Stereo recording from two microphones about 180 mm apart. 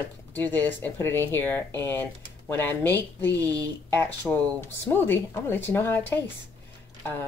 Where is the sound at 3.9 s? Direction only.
10° left (ahead or behind).